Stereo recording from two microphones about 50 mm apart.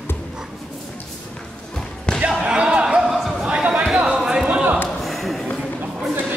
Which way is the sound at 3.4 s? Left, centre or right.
Centre.